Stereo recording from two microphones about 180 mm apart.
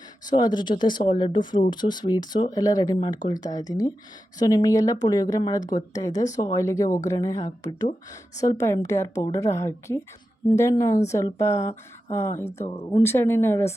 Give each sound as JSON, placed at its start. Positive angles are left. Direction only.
{"t": 0.3, "sound": "a woman's voice", "side_deg": 20}
{"t": 12.5, "sound": "speech", "side_deg": 35}
{"t": 12.9, "sound": "a woman's voice", "side_deg": 15}